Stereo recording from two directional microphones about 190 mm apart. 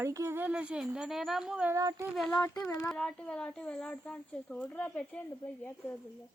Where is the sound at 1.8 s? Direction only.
20° right (ahead or behind).